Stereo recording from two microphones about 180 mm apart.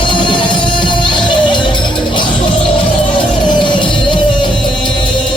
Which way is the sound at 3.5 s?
25° left (ahead or behind).